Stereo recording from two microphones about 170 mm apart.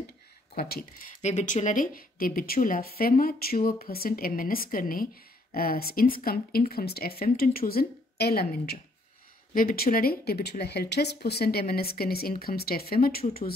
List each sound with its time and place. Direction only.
1.2 s speech: 45° left (ahead or behind); by 13.2 s 60° left (ahead or behind)